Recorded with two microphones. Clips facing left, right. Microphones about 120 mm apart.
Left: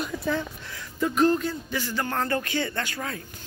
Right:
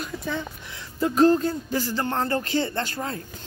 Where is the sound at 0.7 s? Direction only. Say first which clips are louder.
Right 2 dB; 30° right (ahead or behind).